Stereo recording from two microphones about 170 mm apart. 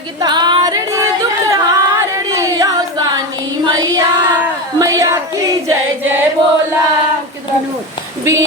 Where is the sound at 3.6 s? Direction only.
25° right (ahead or behind).